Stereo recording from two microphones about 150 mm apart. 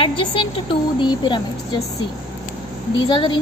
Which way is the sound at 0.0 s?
35° left (ahead or behind).